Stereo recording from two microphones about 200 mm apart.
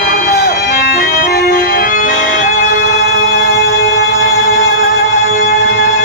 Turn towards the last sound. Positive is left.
turn(degrees=45)  # may be behind; listen again after turning